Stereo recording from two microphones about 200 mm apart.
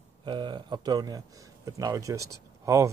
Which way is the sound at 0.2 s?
25° right (ahead or behind).